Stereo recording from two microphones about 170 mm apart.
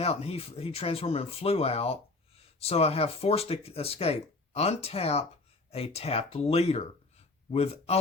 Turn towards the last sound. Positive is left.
turn(degrees=35)  # may be behind; listen again after turning